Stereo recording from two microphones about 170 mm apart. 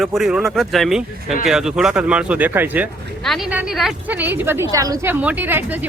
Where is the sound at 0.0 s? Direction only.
Centre (ahead or behind).